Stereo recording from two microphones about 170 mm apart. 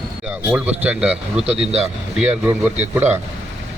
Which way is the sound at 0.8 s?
10° right (ahead or behind).